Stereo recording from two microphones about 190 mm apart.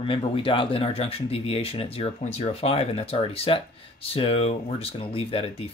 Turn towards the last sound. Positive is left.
turn(degrees=30)  # may be behind; listen again after turning